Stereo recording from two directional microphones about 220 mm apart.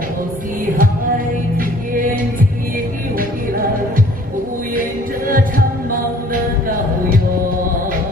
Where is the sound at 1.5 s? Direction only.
40° right (ahead or behind).